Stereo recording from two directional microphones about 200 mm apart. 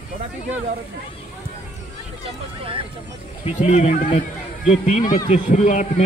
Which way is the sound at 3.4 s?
35° left (ahead or behind).